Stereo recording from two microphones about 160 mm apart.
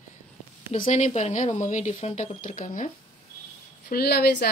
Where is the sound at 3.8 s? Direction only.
80° left.